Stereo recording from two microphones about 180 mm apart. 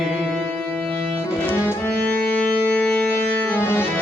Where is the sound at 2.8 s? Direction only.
5° left (ahead or behind).